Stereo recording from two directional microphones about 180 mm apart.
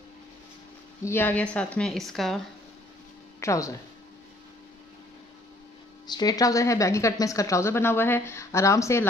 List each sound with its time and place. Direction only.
1.0 s a woman's voice: 10° left (ahead or behind)
3.3 s a woman's voice: 15° left (ahead or behind)
6.0 s a woman's voice: 20° left (ahead or behind)